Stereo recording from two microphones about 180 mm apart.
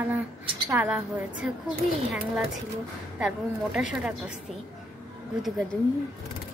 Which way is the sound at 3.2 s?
5° right (ahead or behind).